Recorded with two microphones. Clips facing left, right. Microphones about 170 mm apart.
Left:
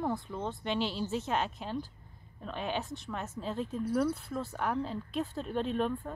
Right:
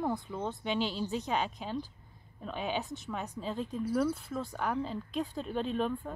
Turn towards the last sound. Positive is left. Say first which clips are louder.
# left 1 dB
turn(degrees=0)  # may be behind; listen again after turning